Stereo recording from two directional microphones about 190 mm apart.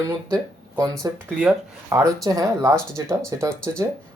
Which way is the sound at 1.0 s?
20° right (ahead or behind).